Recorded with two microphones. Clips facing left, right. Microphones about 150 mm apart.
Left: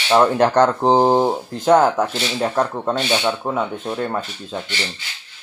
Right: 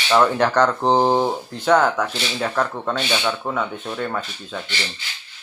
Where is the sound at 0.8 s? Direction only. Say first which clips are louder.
Left 3 dB; 10° left (ahead or behind).